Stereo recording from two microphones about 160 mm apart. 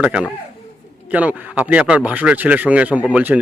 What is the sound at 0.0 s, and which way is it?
A man's voice, 5° right (ahead or behind).